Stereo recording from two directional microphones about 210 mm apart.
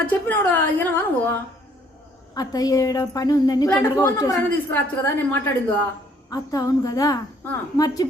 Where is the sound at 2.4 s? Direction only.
15° left (ahead or behind).